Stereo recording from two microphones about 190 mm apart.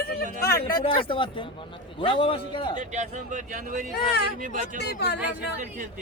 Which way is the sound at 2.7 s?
40° right (ahead or behind).